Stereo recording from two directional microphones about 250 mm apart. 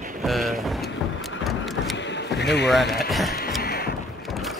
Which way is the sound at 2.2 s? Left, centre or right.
Left.